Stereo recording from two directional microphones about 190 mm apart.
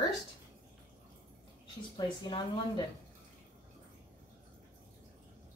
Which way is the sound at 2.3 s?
25° left (ahead or behind).